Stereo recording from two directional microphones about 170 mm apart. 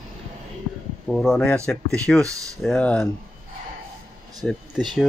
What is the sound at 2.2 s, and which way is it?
Speech, 20° right (ahead or behind).